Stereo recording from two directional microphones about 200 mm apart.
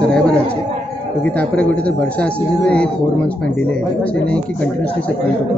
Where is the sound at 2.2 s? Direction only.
5° left (ahead or behind).